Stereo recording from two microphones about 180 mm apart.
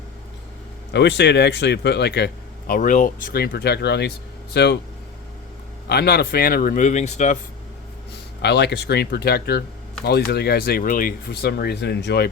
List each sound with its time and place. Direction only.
0.9 s speech: 75° left (ahead or behind)
5.9 s speech: 65° left (ahead or behind); by 7.3 s 40° left (ahead or behind)
8.4 s speech: 65° left (ahead or behind)